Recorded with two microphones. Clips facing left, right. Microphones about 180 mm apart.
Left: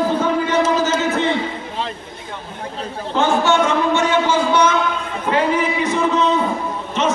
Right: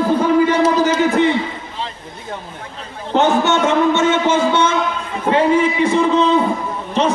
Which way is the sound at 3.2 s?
20° right (ahead or behind).